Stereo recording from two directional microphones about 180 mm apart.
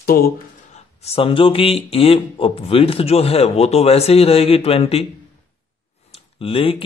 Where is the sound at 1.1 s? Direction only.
30° left (ahead or behind).